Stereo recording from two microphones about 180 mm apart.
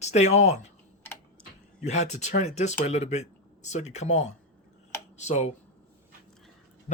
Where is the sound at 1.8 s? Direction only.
40° left (ahead or behind).